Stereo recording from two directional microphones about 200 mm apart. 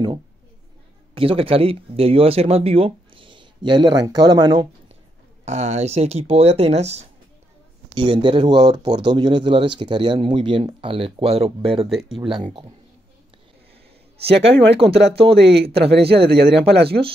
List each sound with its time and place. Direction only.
1.1 s speech: 25° right (ahead or behind)
5.4 s speech: 35° right (ahead or behind)
11.9 s speech: centre (ahead or behind)
14.2 s speech: 60° right (ahead or behind)